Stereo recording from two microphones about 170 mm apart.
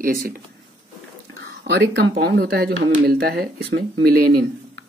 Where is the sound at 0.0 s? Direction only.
55° right (ahead or behind).